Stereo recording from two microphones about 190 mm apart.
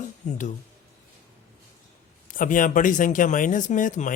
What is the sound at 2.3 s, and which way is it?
Speech, 45° left (ahead or behind).